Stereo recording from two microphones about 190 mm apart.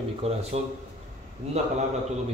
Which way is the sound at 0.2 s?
30° right (ahead or behind).